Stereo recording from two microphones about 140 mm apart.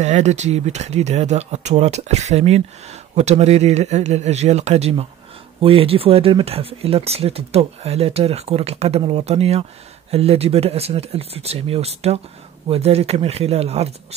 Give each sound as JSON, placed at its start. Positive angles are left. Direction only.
{"t": 0.0, "sound": "speech", "side_deg": -55}